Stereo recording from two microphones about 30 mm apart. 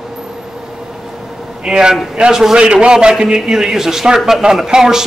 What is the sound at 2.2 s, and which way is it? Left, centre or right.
Speech, right.